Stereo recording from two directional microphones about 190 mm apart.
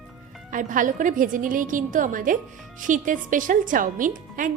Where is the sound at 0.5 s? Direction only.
45° right (ahead or behind).